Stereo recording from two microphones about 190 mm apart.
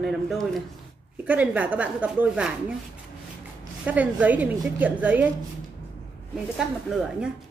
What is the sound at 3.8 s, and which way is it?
Speech, 5° right (ahead or behind).